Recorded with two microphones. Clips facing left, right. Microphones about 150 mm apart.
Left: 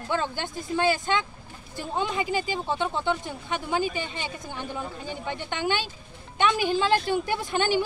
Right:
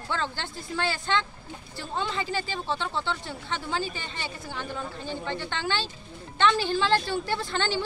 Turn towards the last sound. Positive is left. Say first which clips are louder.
# left 3 dB
turn(degrees=15)  # may be behind; listen again after turning